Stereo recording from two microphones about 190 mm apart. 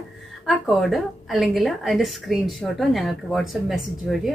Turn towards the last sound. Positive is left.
turn(degrees=0)  # may be behind; listen again after turning